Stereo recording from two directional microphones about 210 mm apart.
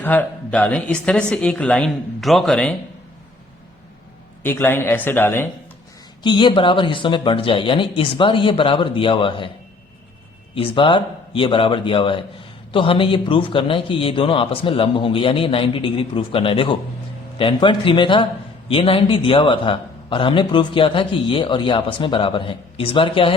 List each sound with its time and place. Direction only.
0.0 s speech: 5° left (ahead or behind)
4.4 s speech: 10° left (ahead or behind)
6.2 s a man's voice: 20° left (ahead or behind)
10.5 s a man's voice: 25° left (ahead or behind)